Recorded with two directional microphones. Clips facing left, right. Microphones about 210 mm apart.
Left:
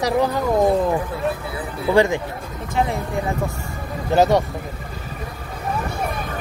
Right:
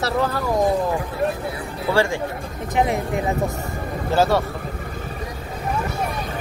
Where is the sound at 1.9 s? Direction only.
20° left (ahead or behind).